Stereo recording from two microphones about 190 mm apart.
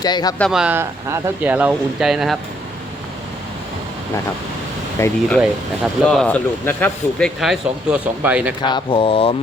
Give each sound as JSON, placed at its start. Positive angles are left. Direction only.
{"t": 0.0, "sound": "speech", "side_deg": 20}
{"t": 0.3, "sound": "speech", "side_deg": 0}
{"t": 4.9, "sound": "speech", "side_deg": 15}
{"t": 8.6, "sound": "speech", "side_deg": 25}